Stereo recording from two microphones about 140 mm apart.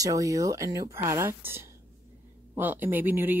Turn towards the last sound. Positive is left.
turn(degrees=-15)  # may be behind; listen again after turning